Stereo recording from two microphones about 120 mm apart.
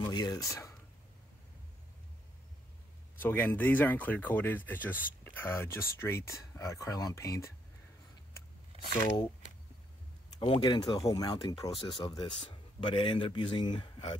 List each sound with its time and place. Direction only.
0.1 s speech: 30° left (ahead or behind)
3.2 s speech: 15° left (ahead or behind)
8.9 s speech: 40° left (ahead or behind)
10.4 s speech: 40° left (ahead or behind)
12.2 s speech: 45° left (ahead or behind)